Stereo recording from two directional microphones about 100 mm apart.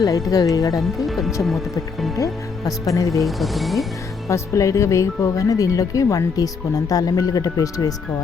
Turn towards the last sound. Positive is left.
turn(degrees=35)  # may be behind; listen again after turning